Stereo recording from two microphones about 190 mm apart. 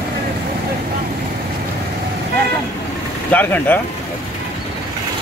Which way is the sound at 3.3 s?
10° left (ahead or behind).